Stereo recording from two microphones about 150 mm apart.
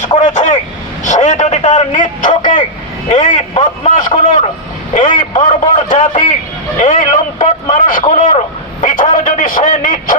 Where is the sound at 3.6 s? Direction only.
55° left (ahead or behind).